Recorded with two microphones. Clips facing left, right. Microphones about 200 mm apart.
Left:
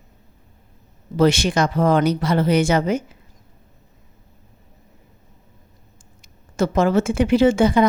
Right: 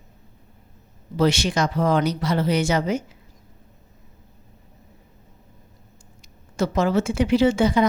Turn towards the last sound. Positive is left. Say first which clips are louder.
# left 3 dB
turn(degrees=50)  # may be behind; listen again after turning